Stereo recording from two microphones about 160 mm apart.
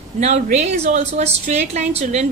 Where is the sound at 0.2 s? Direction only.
45° right (ahead or behind).